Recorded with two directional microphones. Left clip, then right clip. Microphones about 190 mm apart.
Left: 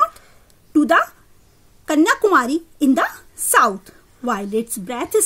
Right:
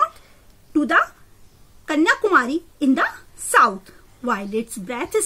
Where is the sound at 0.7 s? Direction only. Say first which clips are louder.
Left 3 dB; 50° left (ahead or behind).